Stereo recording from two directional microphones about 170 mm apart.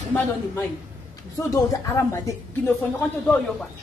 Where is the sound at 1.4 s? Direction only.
20° left (ahead or behind).